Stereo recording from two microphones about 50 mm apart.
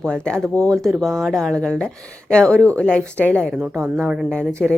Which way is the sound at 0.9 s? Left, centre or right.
Centre.